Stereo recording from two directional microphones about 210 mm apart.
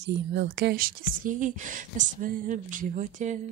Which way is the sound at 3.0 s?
35° right (ahead or behind).